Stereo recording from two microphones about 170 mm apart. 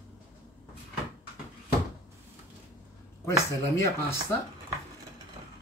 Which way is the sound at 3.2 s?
15° left (ahead or behind).